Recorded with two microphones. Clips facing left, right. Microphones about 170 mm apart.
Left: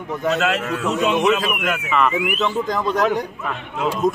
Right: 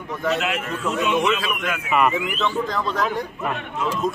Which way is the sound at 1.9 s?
10° right (ahead or behind).